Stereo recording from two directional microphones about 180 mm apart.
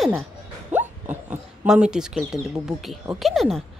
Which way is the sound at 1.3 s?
5° right (ahead or behind).